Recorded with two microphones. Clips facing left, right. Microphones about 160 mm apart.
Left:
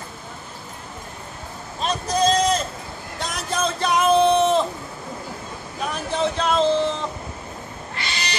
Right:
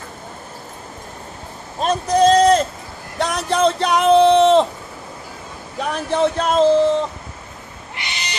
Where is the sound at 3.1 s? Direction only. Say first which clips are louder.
Right 8 dB; 70° right (ahead or behind).